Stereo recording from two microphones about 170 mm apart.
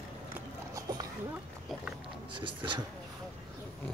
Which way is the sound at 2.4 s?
30° right (ahead or behind).